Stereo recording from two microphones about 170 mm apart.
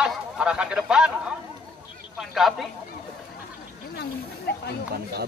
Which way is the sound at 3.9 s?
70° left (ahead or behind).